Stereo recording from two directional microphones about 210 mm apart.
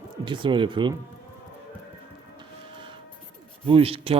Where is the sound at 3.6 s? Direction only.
25° right (ahead or behind).